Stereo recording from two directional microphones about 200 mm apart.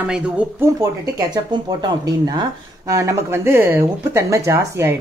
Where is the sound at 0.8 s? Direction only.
20° right (ahead or behind).